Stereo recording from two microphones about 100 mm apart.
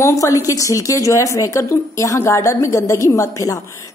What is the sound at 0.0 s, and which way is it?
A woman's voice, 35° left (ahead or behind).